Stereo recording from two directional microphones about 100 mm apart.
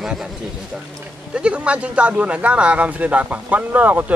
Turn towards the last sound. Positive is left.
turn(degrees=-15)  # may be behind; listen again after turning